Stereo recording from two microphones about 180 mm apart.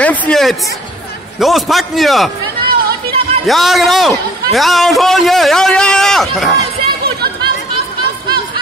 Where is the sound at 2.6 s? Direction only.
55° right (ahead or behind).